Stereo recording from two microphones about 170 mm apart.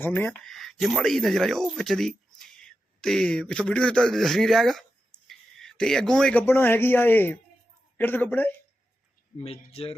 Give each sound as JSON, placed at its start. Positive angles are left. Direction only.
{"t": 0.0, "sound": "speech", "side_deg": 10}
{"t": 9.4, "sound": "speech", "side_deg": 35}